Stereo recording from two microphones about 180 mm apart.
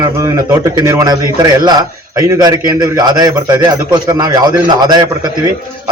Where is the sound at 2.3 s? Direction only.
20° right (ahead or behind).